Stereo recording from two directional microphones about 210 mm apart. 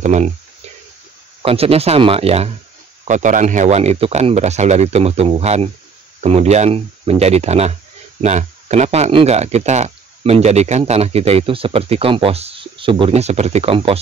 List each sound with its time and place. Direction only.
0.0 s a man's voice: 35° right (ahead or behind)
1.4 s a man's voice: 25° right (ahead or behind)